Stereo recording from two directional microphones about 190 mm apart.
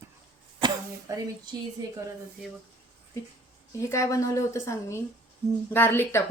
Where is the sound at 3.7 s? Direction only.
15° left (ahead or behind).